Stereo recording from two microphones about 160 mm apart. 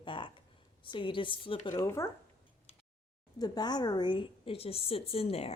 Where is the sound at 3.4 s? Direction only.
25° left (ahead or behind).